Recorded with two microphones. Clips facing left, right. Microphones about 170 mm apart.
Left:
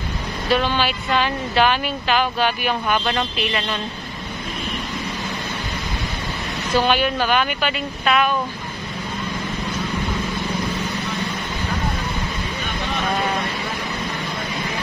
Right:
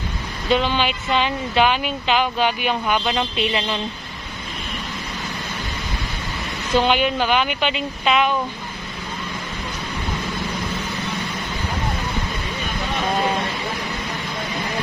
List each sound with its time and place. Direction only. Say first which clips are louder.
0.5 s speech: right 1 dB; 15° right (ahead or behind)
6.9 s speech: even; 15° right (ahead or behind)